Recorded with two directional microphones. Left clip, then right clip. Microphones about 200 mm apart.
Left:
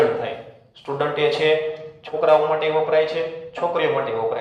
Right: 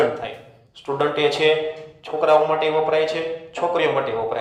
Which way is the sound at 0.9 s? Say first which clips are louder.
Right 1 dB; 30° right (ahead or behind).